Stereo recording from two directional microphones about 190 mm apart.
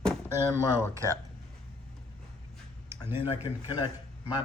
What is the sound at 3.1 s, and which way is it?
Speech, 25° left (ahead or behind).